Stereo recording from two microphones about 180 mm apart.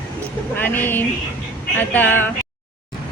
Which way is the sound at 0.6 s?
10° left (ahead or behind).